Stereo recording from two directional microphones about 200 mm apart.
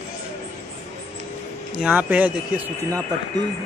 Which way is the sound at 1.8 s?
5° right (ahead or behind).